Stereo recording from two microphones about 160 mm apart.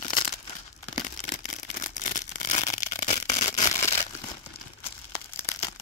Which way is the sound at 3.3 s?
20° left (ahead or behind).